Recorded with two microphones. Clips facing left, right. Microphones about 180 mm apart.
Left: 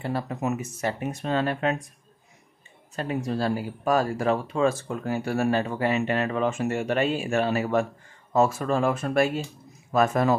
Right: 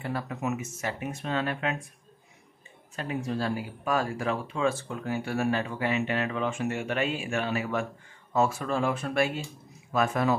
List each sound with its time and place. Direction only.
0.0 s speech: 35° left (ahead or behind)
3.0 s speech: 40° left (ahead or behind)